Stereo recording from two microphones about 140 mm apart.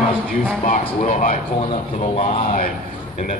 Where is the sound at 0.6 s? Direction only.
65° left (ahead or behind).